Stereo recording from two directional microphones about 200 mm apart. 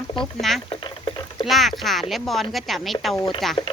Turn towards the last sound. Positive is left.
turn(degrees=0)  # may be behind; listen again after turning